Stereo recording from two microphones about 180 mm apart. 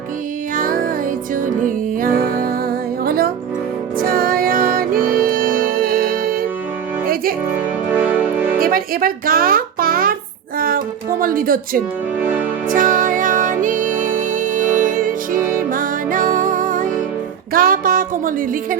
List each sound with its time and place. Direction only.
0.5 s music: 50° right (ahead or behind)
7.9 s music: 10° right (ahead or behind)
8.5 s music: 55° right (ahead or behind)
11.2 s a woman's voice: 50° right (ahead or behind)
12.2 s music: 10° right (ahead or behind)
12.6 s music: 50° right (ahead or behind)